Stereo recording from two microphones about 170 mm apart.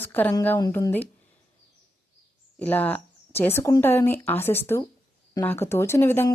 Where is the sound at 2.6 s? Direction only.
10° left (ahead or behind).